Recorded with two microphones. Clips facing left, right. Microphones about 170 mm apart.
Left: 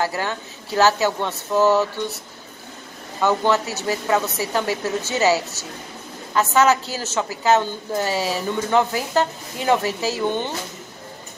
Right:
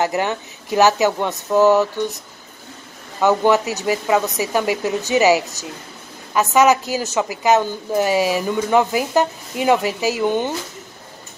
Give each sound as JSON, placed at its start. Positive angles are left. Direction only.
{"t": 0.0, "sound": "a woman's voice", "side_deg": -20}
{"t": 3.2, "sound": "a woman's voice", "side_deg": -15}